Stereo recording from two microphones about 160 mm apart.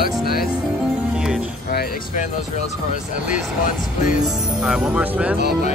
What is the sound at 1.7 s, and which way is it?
Speech, 75° left (ahead or behind).